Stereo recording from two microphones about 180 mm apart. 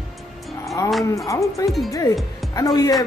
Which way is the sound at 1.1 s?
15° left (ahead or behind).